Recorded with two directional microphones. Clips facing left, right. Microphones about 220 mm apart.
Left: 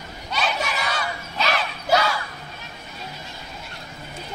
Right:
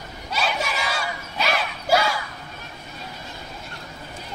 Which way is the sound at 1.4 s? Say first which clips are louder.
Even; 5° right (ahead or behind).